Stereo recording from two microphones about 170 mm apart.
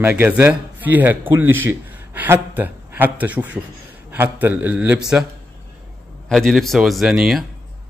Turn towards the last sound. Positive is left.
turn(degrees=0)  # may be behind; listen again after turning